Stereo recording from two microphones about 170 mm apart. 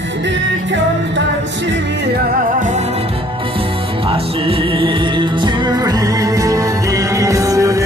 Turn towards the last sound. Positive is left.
turn(degrees=-20)  # may be behind; listen again after turning